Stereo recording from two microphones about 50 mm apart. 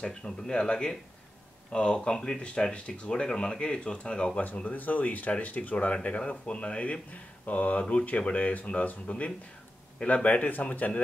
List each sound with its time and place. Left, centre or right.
0.0 s speech: centre
4.6 s speech: left